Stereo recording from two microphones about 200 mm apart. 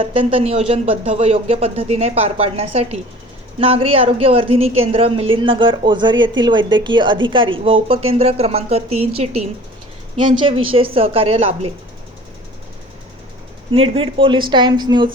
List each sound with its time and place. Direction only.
0.0 s speech: 25° right (ahead or behind)
13.7 s speech: 25° right (ahead or behind)